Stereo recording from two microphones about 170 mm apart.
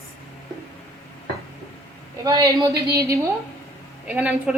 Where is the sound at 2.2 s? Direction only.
20° right (ahead or behind).